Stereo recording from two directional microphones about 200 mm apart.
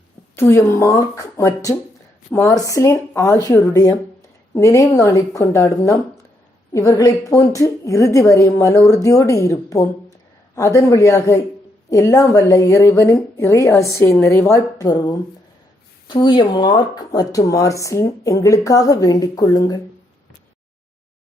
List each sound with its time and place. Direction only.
0.3 s speech: 10° left (ahead or behind)